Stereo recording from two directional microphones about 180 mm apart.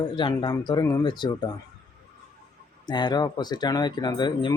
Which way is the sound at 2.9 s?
25° left (ahead or behind).